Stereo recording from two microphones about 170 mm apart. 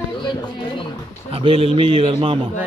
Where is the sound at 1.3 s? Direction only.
35° right (ahead or behind).